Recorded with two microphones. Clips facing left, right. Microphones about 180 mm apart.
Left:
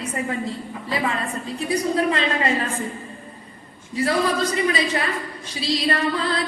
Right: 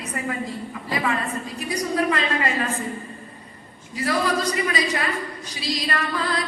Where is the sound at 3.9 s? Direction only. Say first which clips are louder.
Left 2 dB; 25° left (ahead or behind).